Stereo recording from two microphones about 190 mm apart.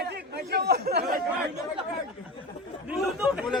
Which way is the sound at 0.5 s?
60° right (ahead or behind).